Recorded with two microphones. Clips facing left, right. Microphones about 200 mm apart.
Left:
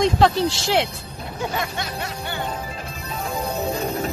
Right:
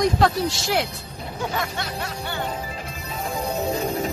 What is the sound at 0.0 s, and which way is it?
Speech, 25° left (ahead or behind).